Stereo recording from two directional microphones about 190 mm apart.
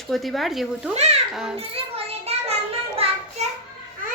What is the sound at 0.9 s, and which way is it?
Speech, 35° right (ahead or behind).